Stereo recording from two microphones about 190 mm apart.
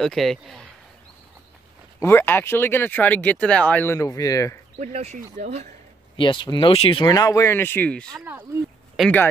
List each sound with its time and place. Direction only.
0.0 s speech: centre (ahead or behind)
2.0 s speech: 10° left (ahead or behind)
4.7 s speech: 35° right (ahead or behind)
6.1 s speech: 25° left (ahead or behind); by 8.2 s 5° left (ahead or behind)
8.2 s speech: 10° right (ahead or behind)
8.9 s speech: centre (ahead or behind)